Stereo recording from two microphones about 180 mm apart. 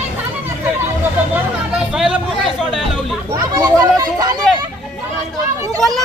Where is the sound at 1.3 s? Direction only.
5° right (ahead or behind).